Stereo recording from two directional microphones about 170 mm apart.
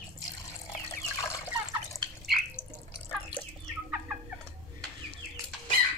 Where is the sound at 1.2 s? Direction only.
15° left (ahead or behind).